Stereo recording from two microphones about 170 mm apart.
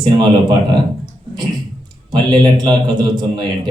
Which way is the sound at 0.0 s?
25° right (ahead or behind).